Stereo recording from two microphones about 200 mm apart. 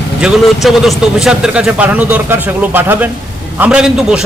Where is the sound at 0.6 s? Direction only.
Centre (ahead or behind).